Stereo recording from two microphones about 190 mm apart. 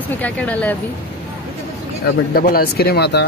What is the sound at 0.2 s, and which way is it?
Speech, 10° left (ahead or behind).